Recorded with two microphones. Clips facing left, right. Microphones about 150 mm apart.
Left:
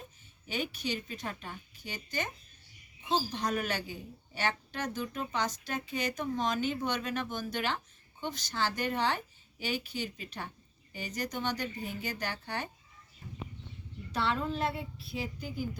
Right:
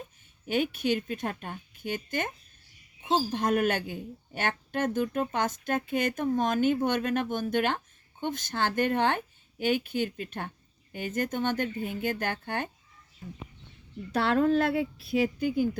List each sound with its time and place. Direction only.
0.4 s a woman's voice: 50° right (ahead or behind)
3.3 s a woman's voice: 50° right (ahead or behind)
14.1 s a woman's voice: 60° right (ahead or behind)